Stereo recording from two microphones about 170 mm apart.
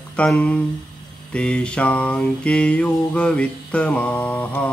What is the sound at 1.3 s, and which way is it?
Music, 5° left (ahead or behind).